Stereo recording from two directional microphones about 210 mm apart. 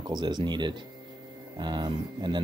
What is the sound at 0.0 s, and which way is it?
Speech, 20° right (ahead or behind).